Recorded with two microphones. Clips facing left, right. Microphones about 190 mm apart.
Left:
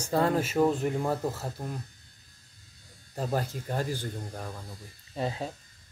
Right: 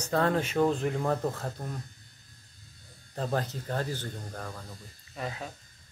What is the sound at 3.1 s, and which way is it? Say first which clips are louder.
Speech: even; 10° left (ahead or behind).